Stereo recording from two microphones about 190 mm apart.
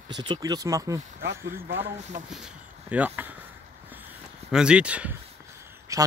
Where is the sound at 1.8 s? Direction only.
35° right (ahead or behind).